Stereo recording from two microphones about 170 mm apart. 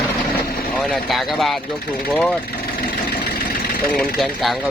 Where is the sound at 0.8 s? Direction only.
Centre (ahead or behind).